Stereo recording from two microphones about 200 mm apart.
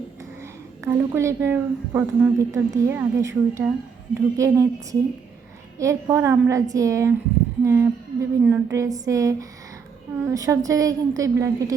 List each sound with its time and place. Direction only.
0.9 s a woman's voice: 15° right (ahead or behind)